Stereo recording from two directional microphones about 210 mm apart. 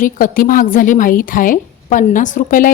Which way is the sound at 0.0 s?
40° left (ahead or behind).